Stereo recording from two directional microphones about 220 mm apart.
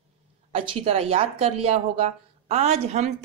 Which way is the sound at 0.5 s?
30° right (ahead or behind).